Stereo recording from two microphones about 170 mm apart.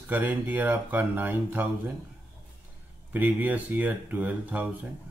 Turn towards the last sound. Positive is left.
turn(degrees=-10)  # may be behind; listen again after turning